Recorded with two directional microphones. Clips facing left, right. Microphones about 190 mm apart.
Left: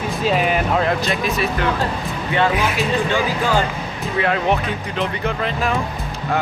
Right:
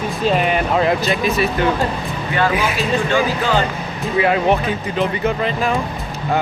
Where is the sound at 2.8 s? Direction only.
15° left (ahead or behind).